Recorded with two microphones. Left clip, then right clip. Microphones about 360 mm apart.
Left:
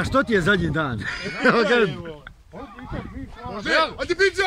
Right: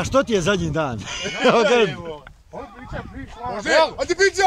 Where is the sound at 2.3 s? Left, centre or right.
Centre.